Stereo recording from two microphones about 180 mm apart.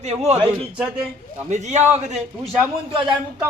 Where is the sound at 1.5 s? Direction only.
40° right (ahead or behind).